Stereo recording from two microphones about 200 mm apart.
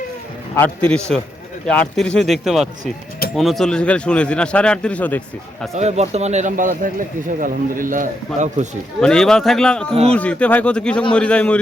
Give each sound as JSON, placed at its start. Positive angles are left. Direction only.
{"t": 0.5, "sound": "speech", "side_deg": 10}
{"t": 5.7, "sound": "speech", "side_deg": -35}
{"t": 9.0, "sound": "speech", "side_deg": 5}